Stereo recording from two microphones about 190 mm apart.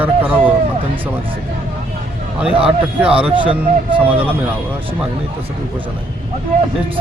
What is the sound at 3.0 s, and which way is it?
Speech, 5° right (ahead or behind).